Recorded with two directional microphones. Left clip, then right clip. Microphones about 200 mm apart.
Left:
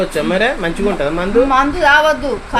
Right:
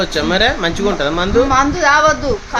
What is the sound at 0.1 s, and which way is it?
A woman's voice, 10° right (ahead or behind).